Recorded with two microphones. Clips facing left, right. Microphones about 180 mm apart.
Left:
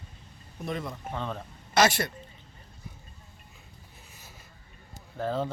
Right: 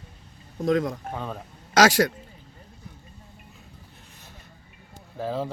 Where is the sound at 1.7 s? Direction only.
90° right.